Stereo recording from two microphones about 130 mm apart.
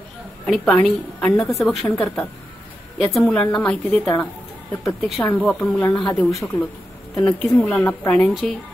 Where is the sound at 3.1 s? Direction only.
5° left (ahead or behind).